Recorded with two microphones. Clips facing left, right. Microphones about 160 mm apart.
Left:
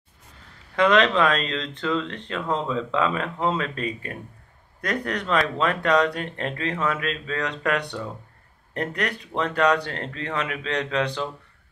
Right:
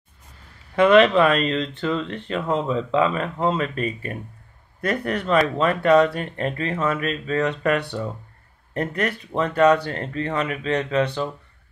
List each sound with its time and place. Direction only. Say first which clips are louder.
0.7 s speech: right 5 dB; 5° right (ahead or behind)
3.2 s speech: right 3 dB; 5° right (ahead or behind)